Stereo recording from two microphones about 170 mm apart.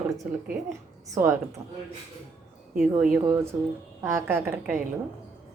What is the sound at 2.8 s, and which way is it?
Speech, 5° right (ahead or behind).